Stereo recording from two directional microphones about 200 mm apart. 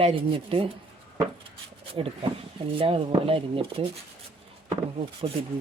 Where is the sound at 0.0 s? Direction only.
30° right (ahead or behind).